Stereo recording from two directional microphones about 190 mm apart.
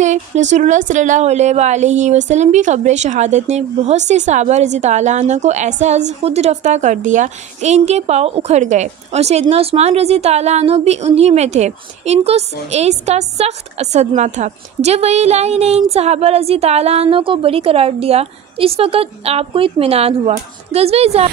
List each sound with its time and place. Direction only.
0.0 s a woman's voice: 40° right (ahead or behind)